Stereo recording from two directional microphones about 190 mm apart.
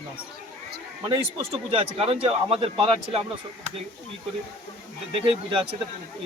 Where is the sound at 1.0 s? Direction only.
25° right (ahead or behind).